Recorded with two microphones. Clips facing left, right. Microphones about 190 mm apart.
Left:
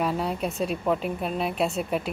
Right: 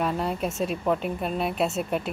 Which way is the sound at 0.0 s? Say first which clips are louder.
Even; centre (ahead or behind).